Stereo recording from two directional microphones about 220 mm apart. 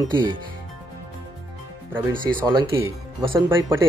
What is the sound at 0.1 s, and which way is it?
Speech, 20° right (ahead or behind).